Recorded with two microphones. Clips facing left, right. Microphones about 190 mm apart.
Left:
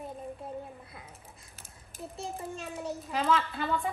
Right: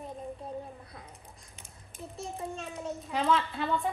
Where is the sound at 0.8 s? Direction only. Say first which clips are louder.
Right 1 dB; 5° left (ahead or behind).